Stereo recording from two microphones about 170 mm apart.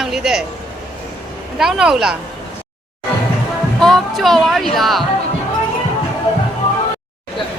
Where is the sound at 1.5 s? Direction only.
5° right (ahead or behind).